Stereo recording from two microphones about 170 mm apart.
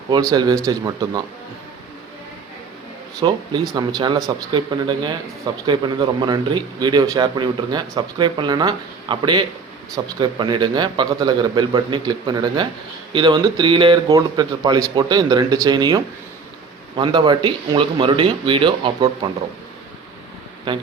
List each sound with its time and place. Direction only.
0.1 s speech: 20° right (ahead or behind)
3.2 s speech: 20° right (ahead or behind)
17.0 s speech: 25° right (ahead or behind)